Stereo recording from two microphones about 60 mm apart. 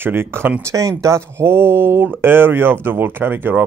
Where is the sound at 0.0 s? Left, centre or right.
Right.